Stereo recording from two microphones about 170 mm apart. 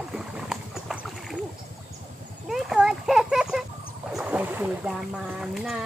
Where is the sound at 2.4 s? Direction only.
Centre (ahead or behind).